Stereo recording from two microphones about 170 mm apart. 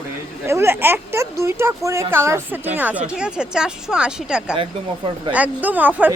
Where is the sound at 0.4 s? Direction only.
15° right (ahead or behind).